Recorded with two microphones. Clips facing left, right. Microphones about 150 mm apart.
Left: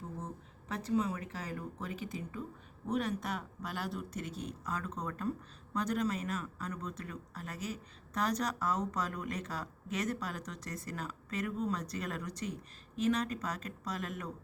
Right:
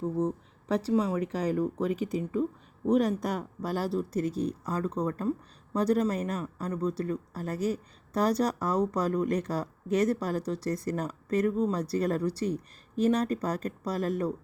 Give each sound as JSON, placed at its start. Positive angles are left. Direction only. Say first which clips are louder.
{"t": 0.0, "sound": "speech", "louder": "right 15 dB", "side_deg": -35}